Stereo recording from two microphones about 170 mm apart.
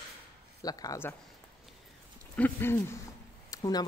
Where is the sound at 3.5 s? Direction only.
25° left (ahead or behind).